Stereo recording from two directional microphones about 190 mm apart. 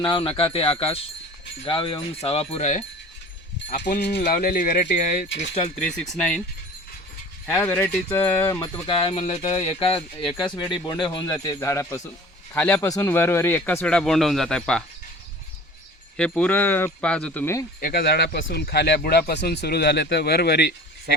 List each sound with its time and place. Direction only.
0.0 s speech: 25° left (ahead or behind)
1.6 s wind chime: 25° left (ahead or behind)
3.7 s speech: 45° left (ahead or behind)
6.0 s speech: 5° left (ahead or behind)
7.4 s speech: 10° left (ahead or behind)
8.9 s speech: 30° left (ahead or behind); by 14.8 s 5° left (ahead or behind)
16.1 s speech: 5° left (ahead or behind)
17.7 s speech: 50° left (ahead or behind)